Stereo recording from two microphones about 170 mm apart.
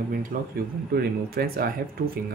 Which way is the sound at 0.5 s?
65° right (ahead or behind).